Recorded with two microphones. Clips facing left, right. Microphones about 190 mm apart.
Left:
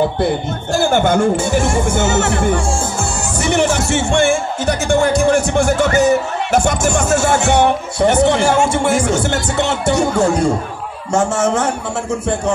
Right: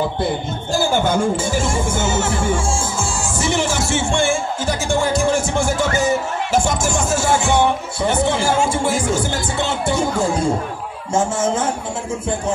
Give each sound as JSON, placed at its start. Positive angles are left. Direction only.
{"t": 0.7, "sound": "speech", "side_deg": 65}